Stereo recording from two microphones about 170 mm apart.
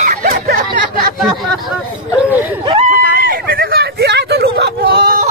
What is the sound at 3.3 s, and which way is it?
Hubbub, 60° right (ahead or behind).